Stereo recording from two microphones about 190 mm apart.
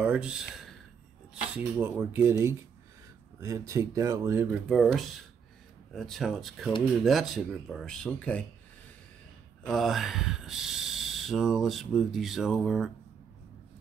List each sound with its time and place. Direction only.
0.0 s speech: 5° right (ahead or behind)
3.3 s speech: 15° right (ahead or behind)
4.6 s speech: centre (ahead or behind)
9.6 s speech: centre (ahead or behind)